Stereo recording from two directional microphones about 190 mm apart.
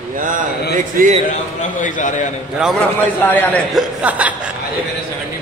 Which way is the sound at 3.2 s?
10° left (ahead or behind).